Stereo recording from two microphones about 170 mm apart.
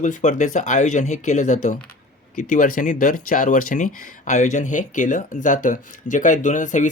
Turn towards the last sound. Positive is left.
turn(degrees=45)  # may be behind; listen again after turning